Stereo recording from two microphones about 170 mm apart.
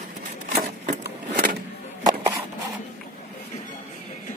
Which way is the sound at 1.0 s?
70° right (ahead or behind).